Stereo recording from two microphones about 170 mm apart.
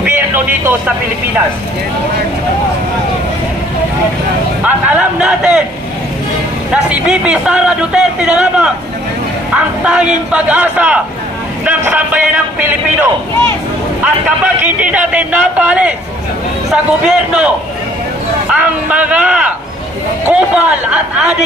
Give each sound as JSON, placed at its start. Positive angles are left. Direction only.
{"t": 0.0, "sound": "a man's voice", "side_deg": -10}
{"t": 4.6, "sound": "a man's voice", "side_deg": -10}
{"t": 6.7, "sound": "a man's voice", "side_deg": -5}
{"t": 10.3, "sound": "a man's voice", "side_deg": -10}
{"t": 18.5, "sound": "a man's voice", "side_deg": -10}